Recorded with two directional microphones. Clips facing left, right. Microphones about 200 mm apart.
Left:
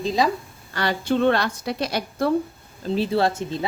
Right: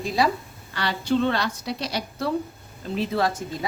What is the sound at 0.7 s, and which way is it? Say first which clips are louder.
A woman's voice: left 1 dB; 50° left (ahead or behind).